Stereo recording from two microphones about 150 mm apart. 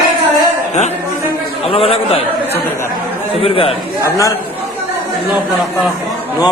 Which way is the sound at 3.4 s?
40° left (ahead or behind).